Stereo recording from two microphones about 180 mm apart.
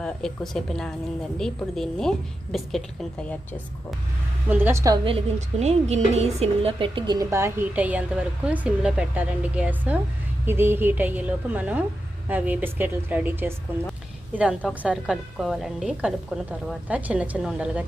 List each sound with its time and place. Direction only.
0.0 s a woman's voice: 5° left (ahead or behind)
4.4 s a woman's voice: 10° right (ahead or behind)
5.0 s a woman's voice: 35° right (ahead or behind); by 17.8 s 5° right (ahead or behind)